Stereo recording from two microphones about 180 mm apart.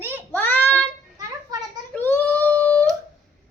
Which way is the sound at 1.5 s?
20° right (ahead or behind).